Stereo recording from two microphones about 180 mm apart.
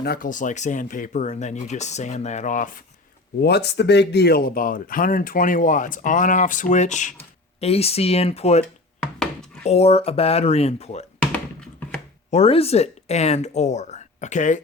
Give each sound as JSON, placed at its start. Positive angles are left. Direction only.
{"t": 0.0, "sound": "speech", "side_deg": 55}
{"t": 3.4, "sound": "speech", "side_deg": 65}
{"t": 9.1, "sound": "a sound", "side_deg": 5}
{"t": 9.6, "sound": "speech", "side_deg": 35}
{"t": 12.3, "sound": "speech", "side_deg": 35}